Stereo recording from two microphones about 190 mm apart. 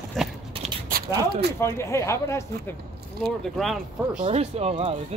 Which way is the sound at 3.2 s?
Centre (ahead or behind).